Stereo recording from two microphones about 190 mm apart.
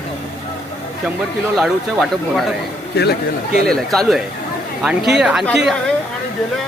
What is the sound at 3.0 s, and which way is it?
Speech, 60° left (ahead or behind).